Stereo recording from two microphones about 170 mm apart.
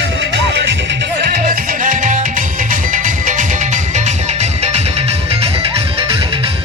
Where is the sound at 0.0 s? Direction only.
90° right.